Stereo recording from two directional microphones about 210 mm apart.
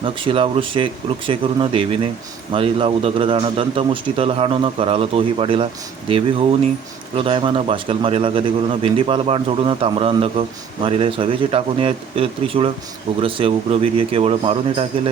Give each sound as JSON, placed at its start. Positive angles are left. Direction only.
{"t": 0.0, "sound": "speech", "side_deg": -25}
{"t": 7.2, "sound": "speech", "side_deg": -25}